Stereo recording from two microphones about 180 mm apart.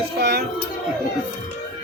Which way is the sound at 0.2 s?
60° right (ahead or behind).